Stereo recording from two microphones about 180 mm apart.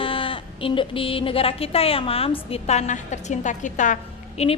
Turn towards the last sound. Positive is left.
turn(degrees=40)  # may be behind; listen again after turning